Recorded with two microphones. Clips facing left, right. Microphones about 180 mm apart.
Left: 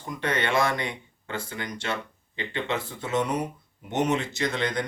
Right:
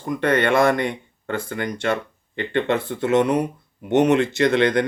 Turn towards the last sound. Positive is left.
turn(degrees=-70)  # may be behind; listen again after turning